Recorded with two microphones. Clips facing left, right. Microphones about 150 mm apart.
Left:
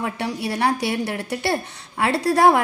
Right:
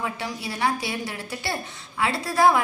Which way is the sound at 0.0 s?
65° left (ahead or behind).